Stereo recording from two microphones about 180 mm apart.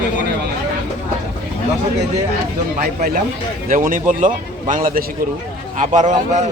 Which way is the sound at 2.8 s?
50° right (ahead or behind).